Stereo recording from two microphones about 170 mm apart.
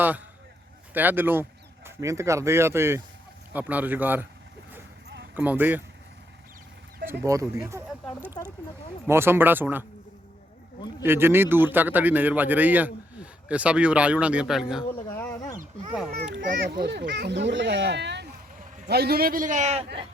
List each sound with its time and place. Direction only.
0.9 s a man's voice: 10° right (ahead or behind)
5.3 s a man's voice: 10° right (ahead or behind)
7.1 s a man's voice: 15° right (ahead or behind)
9.0 s a man's voice: 15° right (ahead or behind)
11.0 s a man's voice: 15° right (ahead or behind)
15.2 s a sound: 20° left (ahead or behind)
16.6 s speech: 80° right
18.9 s a man's voice: 70° right (ahead or behind); by 19.8 s 45° right (ahead or behind)